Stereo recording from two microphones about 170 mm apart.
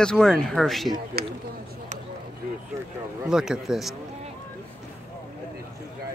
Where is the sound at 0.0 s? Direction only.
5° left (ahead or behind).